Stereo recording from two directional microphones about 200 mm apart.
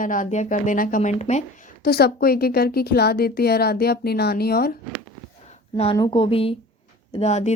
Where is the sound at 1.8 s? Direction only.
50° left (ahead or behind).